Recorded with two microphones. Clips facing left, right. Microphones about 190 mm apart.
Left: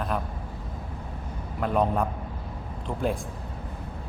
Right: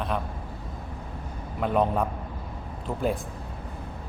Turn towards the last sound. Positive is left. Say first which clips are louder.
# right 1 dB
turn(degrees=0)  # may be behind; listen again after turning